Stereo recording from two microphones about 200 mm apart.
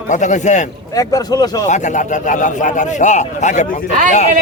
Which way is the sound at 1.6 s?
35° left (ahead or behind).